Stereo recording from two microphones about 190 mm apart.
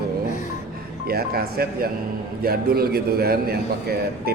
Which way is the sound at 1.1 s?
55° right (ahead or behind).